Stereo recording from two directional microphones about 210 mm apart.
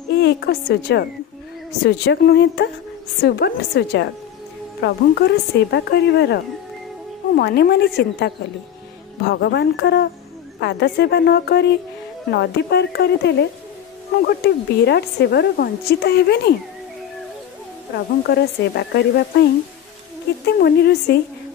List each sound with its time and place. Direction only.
0.1 s a woman's voice: 50° left (ahead or behind)
18.2 s a woman's voice: 50° left (ahead or behind)
20.4 s a woman's voice: 50° left (ahead or behind)